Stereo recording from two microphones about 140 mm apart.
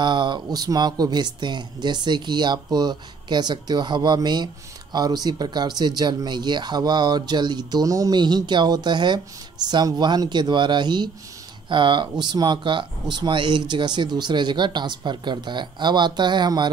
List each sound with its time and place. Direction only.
0.0 s speech: 35° right (ahead or behind)